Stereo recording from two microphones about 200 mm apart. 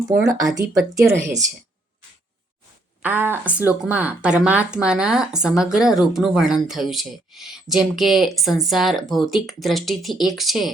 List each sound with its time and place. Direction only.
0.3 s speech: 15° right (ahead or behind)
3.0 s speech: 10° right (ahead or behind)